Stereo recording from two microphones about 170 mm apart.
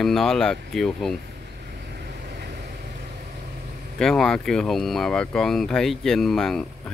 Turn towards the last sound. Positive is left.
turn(degrees=0)  # may be behind; listen again after turning